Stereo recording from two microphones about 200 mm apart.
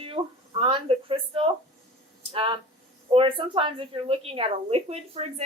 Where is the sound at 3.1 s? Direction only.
25° right (ahead or behind).